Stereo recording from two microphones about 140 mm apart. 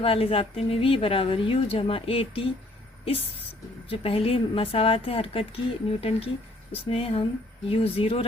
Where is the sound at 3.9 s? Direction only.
40° left (ahead or behind).